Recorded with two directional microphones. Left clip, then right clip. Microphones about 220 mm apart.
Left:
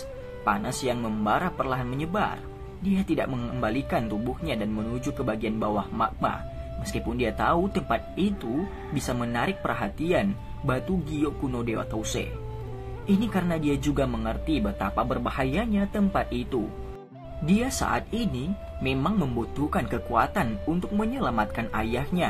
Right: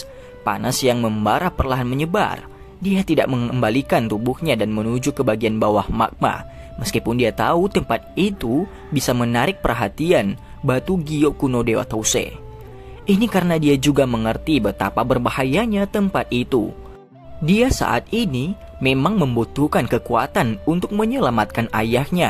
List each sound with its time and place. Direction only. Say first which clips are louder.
0.4 s speech: right 6 dB; 50° right (ahead or behind)